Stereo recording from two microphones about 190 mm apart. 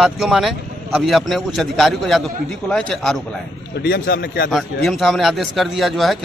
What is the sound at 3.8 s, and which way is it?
Speech, 55° left (ahead or behind).